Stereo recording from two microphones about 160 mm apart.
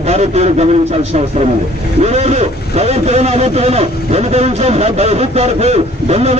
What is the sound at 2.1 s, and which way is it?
A man's voice, 45° right (ahead or behind).